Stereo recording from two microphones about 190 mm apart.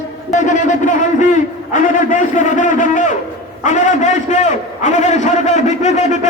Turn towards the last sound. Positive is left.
turn(degrees=40)  # may be behind; listen again after turning